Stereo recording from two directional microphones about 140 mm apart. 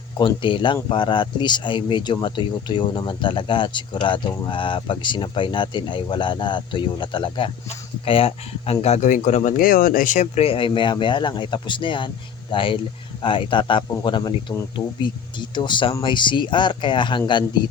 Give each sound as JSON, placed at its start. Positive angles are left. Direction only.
{"t": 0.2, "sound": "speech", "side_deg": 35}